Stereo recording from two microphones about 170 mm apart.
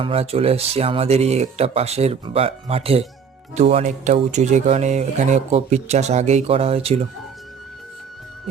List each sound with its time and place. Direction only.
0.0 s speech: 35° right (ahead or behind)